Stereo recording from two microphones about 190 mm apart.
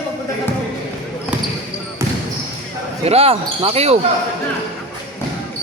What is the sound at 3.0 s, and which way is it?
Speech, 30° right (ahead or behind).